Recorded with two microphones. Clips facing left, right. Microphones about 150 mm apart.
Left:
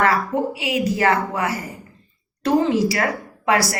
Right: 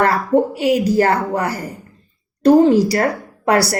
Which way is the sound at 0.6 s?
40° right (ahead or behind).